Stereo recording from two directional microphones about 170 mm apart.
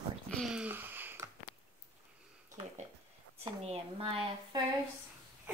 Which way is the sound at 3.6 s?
35° right (ahead or behind).